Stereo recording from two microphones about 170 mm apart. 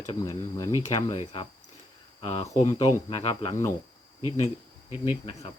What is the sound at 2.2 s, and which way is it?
Speech, 35° left (ahead or behind).